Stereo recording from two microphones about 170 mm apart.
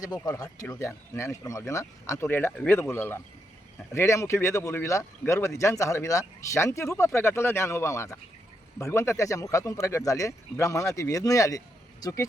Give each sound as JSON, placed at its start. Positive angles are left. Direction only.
{"t": 0.0, "sound": "speech", "side_deg": 20}